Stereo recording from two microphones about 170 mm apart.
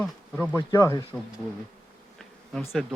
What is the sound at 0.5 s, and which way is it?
Speech, 20° left (ahead or behind).